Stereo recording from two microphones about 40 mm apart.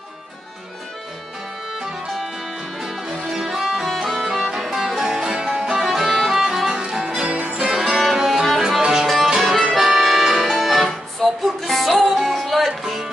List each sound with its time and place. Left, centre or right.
2.8 s music: centre
5.9 s music: centre
7.2 s music: right
7.7 s music: centre
9.8 s accordion: centre
10.2 s music: centre